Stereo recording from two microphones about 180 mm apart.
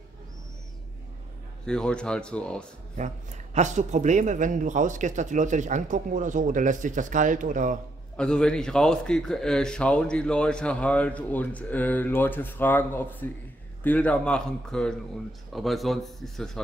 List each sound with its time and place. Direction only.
1.7 s speech: 5° left (ahead or behind)
3.5 s speech: 40° right (ahead or behind)
8.2 s speech: 5° left (ahead or behind)